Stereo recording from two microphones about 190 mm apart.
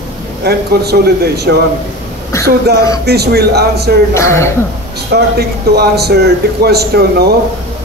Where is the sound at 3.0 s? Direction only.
60° right (ahead or behind).